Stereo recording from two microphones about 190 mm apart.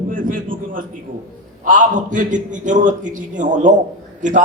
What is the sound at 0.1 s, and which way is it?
A man's voice, 45° right (ahead or behind).